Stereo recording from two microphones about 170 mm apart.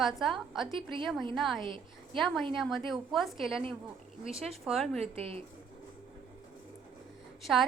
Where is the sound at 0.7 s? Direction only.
30° right (ahead or behind).